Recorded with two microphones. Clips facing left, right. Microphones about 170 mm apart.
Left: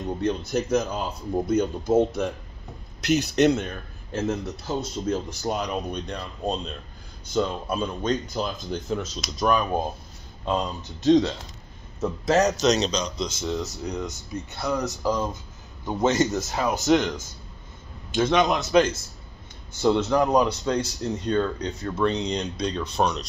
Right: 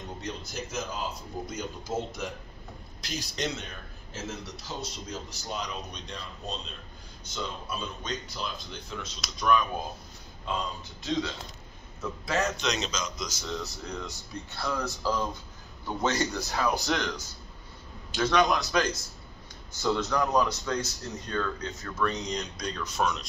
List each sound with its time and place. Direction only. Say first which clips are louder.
0.2 s a man's voice: left 13 dB; 60° left (ahead or behind); by 17.1 s 20° left (ahead or behind)
18.1 s speech: left 4 dB; 20° left (ahead or behind)